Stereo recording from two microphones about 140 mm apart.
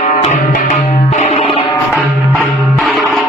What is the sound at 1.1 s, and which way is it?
Music, 45° left (ahead or behind).